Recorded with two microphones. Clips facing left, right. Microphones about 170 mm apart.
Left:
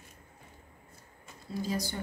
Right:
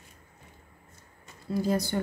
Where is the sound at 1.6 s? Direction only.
55° right (ahead or behind).